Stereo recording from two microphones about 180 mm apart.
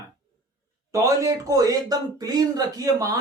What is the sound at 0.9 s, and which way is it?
Speech, 15° right (ahead or behind).